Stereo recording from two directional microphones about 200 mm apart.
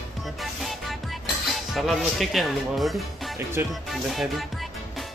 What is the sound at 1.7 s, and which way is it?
Speech, centre (ahead or behind).